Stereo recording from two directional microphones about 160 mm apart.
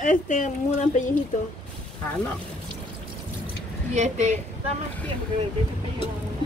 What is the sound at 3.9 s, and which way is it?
Speech, 45° right (ahead or behind).